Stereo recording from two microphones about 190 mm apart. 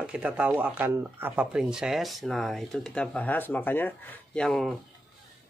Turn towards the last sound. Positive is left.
turn(degrees=0)  # may be behind; listen again after turning